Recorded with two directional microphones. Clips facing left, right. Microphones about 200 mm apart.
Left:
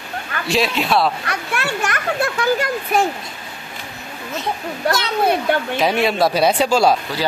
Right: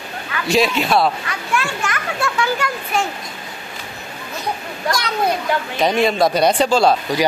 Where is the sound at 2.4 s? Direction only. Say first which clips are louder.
Left 3 dB; 40° left (ahead or behind).